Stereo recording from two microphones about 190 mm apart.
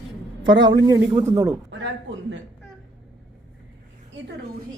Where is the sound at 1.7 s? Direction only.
75° right (ahead or behind).